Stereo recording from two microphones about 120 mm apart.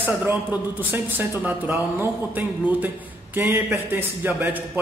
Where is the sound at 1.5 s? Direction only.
15° right (ahead or behind).